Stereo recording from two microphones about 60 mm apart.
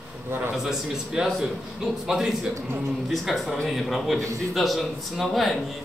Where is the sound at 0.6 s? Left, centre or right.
Centre.